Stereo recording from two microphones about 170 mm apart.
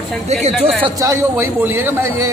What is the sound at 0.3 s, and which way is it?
Speech, 40° right (ahead or behind).